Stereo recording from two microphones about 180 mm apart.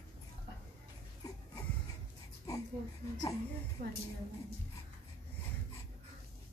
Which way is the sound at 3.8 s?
45° right (ahead or behind).